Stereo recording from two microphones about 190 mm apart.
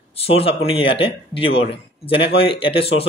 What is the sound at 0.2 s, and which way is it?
Speech, 30° left (ahead or behind).